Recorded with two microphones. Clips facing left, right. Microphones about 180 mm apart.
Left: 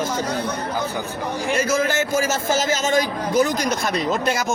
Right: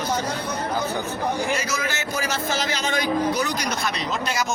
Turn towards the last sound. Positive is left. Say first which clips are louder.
# left 3 dB
turn(degrees=45)  # may be behind; listen again after turning